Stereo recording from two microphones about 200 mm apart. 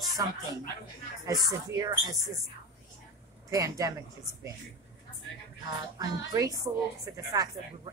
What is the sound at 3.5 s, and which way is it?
Speech, 15° right (ahead or behind).